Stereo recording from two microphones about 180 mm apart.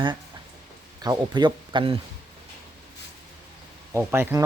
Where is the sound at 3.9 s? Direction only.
10° right (ahead or behind).